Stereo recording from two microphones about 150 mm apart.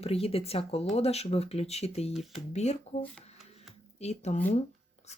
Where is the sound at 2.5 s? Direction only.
50° left (ahead or behind).